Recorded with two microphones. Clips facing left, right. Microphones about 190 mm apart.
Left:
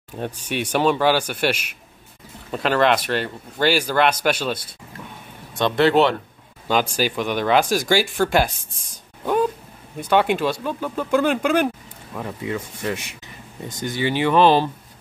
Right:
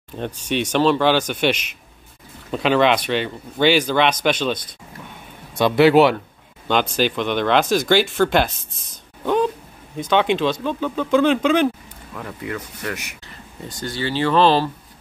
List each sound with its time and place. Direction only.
0.5 s speech: 10° left (ahead or behind)
5.6 s speech: 5° right (ahead or behind)
6.7 s speech: 5° left (ahead or behind)
9.2 s a sound: 5° left (ahead or behind)
9.9 s speech: 10° left (ahead or behind)
12.1 s speech: 20° left (ahead or behind)